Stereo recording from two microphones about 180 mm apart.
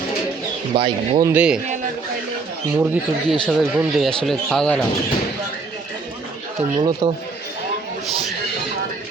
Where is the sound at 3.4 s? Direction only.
Centre (ahead or behind).